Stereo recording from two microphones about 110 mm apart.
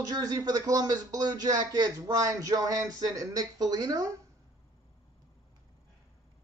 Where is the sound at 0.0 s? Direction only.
35° right (ahead or behind).